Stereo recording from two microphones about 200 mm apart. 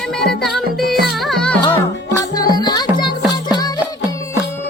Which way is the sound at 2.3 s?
20° left (ahead or behind).